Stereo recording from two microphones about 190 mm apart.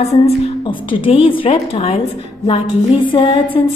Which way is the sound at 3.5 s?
25° left (ahead or behind).